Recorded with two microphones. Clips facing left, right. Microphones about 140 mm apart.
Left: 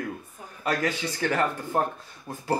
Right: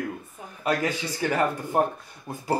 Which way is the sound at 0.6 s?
15° right (ahead or behind).